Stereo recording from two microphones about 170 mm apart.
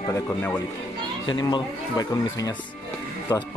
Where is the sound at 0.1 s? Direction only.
20° left (ahead or behind).